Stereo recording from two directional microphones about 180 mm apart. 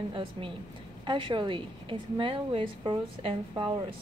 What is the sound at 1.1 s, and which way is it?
A woman's voice, 25° right (ahead or behind).